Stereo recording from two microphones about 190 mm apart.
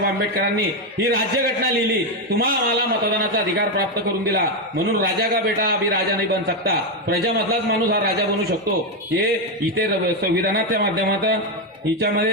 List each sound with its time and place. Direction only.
5.6 s a man's voice: 55° right (ahead or behind)
10.8 s a man's voice: 55° right (ahead or behind)